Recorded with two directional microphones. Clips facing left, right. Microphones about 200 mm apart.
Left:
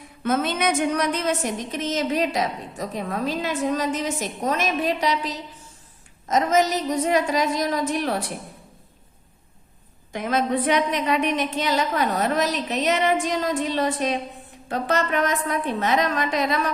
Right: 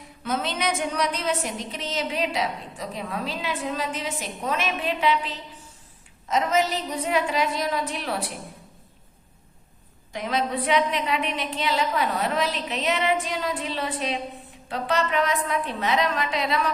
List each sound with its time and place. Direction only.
0.2 s a woman's voice: 50° left (ahead or behind)
10.1 s a woman's voice: 50° left (ahead or behind)